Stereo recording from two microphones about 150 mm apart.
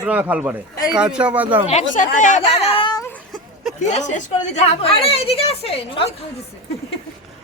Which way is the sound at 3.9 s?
50° left (ahead or behind).